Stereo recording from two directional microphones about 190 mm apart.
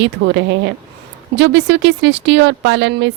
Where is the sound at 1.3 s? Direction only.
70° right (ahead or behind).